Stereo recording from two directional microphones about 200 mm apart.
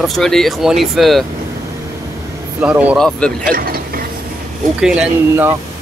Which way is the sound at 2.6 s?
5° right (ahead or behind).